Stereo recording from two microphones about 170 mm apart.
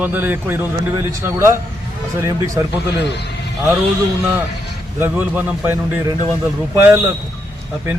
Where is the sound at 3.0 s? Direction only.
80° left.